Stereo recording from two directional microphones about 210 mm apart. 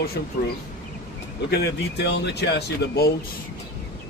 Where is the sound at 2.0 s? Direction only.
50° left (ahead or behind).